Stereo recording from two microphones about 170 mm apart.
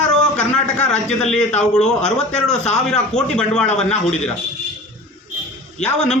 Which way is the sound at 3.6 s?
40° left (ahead or behind).